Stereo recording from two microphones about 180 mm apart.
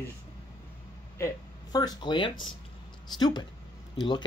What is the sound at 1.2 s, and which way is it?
Speech, 20° left (ahead or behind).